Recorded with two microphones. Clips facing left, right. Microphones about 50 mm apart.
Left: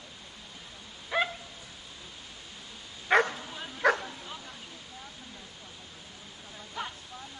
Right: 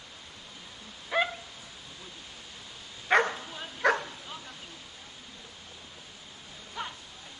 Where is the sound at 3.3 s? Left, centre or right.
Centre.